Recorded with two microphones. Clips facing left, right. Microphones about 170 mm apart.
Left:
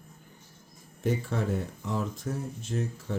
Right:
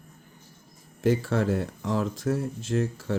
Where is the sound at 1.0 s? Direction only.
90° right.